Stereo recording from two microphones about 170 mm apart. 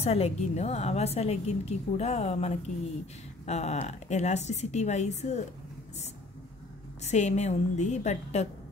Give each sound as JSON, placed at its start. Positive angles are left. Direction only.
{"t": 0.0, "sound": "a woman's voice", "side_deg": 35}
{"t": 7.0, "sound": "a woman's voice", "side_deg": 40}